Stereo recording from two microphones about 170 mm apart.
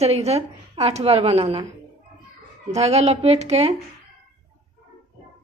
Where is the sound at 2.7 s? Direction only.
40° right (ahead or behind).